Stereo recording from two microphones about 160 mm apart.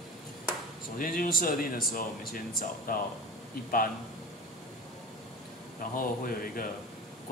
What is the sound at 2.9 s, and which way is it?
Speech, 65° left (ahead or behind).